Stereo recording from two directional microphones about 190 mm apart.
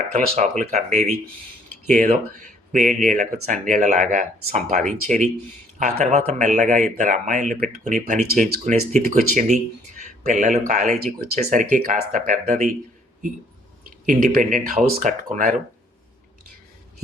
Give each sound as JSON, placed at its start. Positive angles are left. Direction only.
{"t": 0.1, "sound": "speech", "side_deg": -40}
{"t": 5.8, "sound": "speech", "side_deg": -40}
{"t": 14.1, "sound": "speech", "side_deg": -45}